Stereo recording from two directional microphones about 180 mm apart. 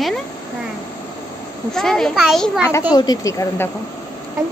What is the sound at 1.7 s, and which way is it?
Speech, centre (ahead or behind).